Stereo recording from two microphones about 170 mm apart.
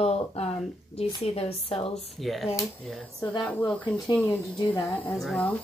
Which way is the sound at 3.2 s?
25° left (ahead or behind).